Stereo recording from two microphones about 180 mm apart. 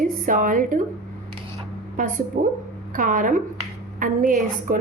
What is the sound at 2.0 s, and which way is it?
A woman's voice, 45° right (ahead or behind).